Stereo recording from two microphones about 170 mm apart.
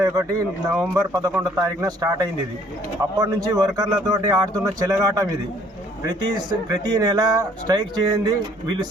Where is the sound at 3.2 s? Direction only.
20° right (ahead or behind).